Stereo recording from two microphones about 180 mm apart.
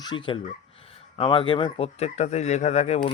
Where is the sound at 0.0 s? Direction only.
25° left (ahead or behind).